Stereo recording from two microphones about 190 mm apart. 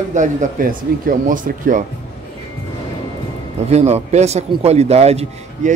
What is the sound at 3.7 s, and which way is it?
A man's voice, 35° right (ahead or behind).